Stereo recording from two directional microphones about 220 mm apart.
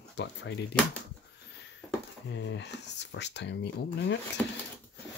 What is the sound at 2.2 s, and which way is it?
Speech, 55° left (ahead or behind).